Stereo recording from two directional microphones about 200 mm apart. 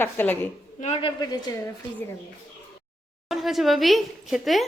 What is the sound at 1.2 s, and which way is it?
Speech, 20° left (ahead or behind).